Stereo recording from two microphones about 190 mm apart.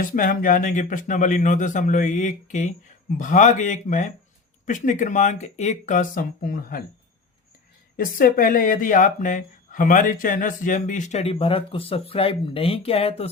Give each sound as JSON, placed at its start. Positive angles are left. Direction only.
{"t": 0.0, "sound": "speech", "side_deg": 45}
{"t": 7.9, "sound": "speech", "side_deg": 50}